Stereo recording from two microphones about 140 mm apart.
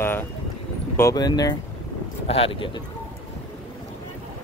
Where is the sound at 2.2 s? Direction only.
45° left (ahead or behind).